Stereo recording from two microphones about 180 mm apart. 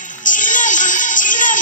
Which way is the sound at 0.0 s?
45° left (ahead or behind).